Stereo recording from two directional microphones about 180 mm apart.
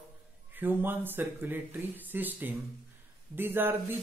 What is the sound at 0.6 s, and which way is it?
A man's voice, 10° right (ahead or behind).